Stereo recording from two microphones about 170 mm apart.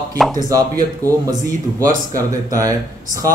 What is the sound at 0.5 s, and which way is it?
A man's voice, 20° right (ahead or behind).